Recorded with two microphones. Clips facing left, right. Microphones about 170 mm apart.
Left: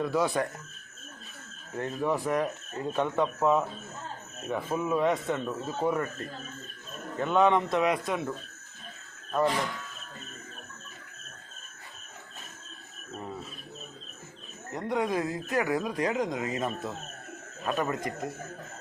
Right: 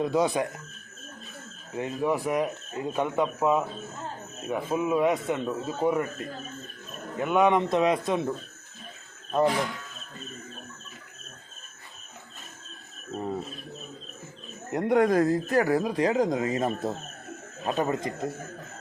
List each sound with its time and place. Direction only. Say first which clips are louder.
0.0 s speech: right 3 dB; 20° right (ahead or behind)
1.7 s speech: right 2 dB; 10° right (ahead or behind)
9.3 s speech: right 3 dB; 20° right (ahead or behind)
14.7 s speech: right 7 dB; 60° right (ahead or behind); by 16.9 s 35° right (ahead or behind)
17.7 s speech: right 3 dB; 25° right (ahead or behind)